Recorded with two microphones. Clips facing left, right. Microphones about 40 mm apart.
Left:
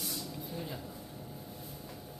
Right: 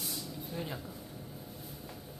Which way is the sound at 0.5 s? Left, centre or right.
Right.